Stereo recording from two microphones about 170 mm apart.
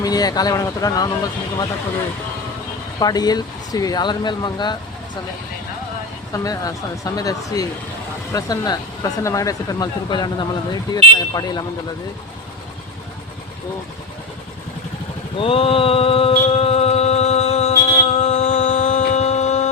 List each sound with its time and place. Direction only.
0.0 s speech: 20° left (ahead or behind)
3.0 s speech: 25° left (ahead or behind)
6.3 s speech: 20° left (ahead or behind)
15.4 s music: 35° left (ahead or behind)